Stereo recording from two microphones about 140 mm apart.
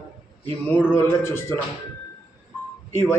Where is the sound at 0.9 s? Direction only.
15° left (ahead or behind).